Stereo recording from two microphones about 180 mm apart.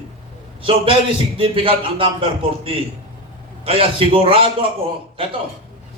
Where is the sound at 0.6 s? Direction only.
30° right (ahead or behind).